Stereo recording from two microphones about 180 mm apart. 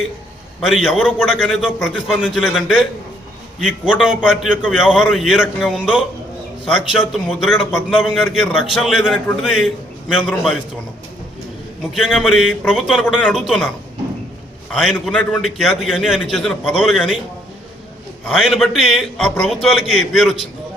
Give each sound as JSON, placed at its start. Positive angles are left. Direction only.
{"t": 0.6, "sound": "a man's voice", "side_deg": 0}
{"t": 3.9, "sound": "a man's voice", "side_deg": -5}
{"t": 11.9, "sound": "a man's voice", "side_deg": 0}
{"t": 15.0, "sound": "a man's voice", "side_deg": 0}
{"t": 18.3, "sound": "a man's voice", "side_deg": 0}